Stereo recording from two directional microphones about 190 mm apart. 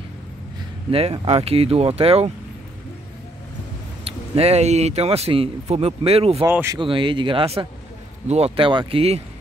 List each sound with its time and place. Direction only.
0.9 s speech: 30° right (ahead or behind)
4.0 s speech: 35° right (ahead or behind)
6.4 s speech: 15° right (ahead or behind)
6.8 s speech: 25° right (ahead or behind)